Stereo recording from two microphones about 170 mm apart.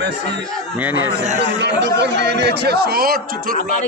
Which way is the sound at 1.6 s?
90° right.